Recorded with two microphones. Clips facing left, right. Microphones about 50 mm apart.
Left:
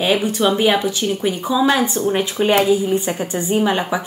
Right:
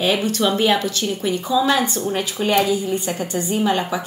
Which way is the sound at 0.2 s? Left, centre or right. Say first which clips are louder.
Left 2 dB; centre.